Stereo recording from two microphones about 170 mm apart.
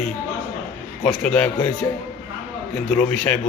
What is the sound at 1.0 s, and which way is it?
Speech, 5° left (ahead or behind).